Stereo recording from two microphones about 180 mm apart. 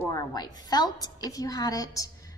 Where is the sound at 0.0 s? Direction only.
20° left (ahead or behind).